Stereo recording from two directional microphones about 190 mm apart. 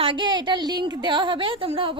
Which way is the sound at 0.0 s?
25° right (ahead or behind).